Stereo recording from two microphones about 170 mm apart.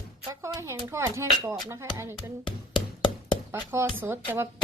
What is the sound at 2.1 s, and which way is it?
Music, 30° left (ahead or behind).